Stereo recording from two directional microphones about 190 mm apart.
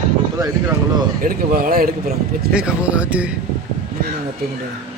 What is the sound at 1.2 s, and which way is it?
A man's voice, 50° right (ahead or behind).